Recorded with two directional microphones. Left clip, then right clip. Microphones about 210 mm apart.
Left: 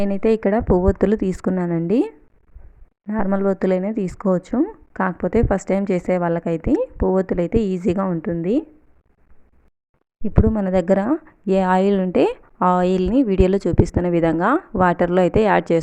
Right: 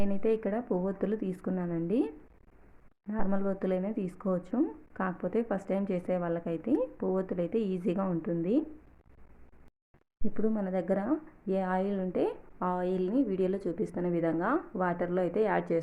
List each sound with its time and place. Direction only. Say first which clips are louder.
0.0 s speech: left 11 dB; 45° left (ahead or behind)
10.2 s speech: left 12 dB; 50° left (ahead or behind)